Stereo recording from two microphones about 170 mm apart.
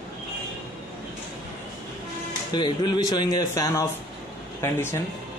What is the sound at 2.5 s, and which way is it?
A man's voice, 25° left (ahead or behind).